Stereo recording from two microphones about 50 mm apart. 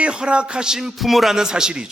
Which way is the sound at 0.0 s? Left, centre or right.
Right.